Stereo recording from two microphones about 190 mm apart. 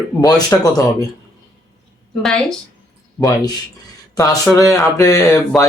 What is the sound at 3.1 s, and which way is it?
Speech, 20° left (ahead or behind).